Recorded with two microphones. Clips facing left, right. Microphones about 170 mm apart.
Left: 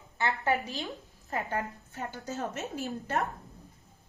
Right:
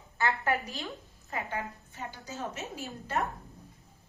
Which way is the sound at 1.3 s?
40° left (ahead or behind).